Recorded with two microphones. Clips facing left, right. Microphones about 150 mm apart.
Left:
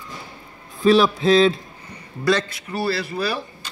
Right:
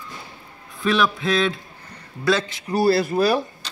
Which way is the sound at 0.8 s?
35° left (ahead or behind).